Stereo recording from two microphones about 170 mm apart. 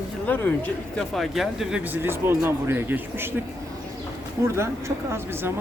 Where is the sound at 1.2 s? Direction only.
Centre (ahead or behind).